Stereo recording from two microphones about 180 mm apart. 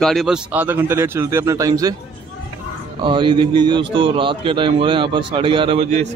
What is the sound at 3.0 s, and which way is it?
A man's voice, 25° right (ahead or behind).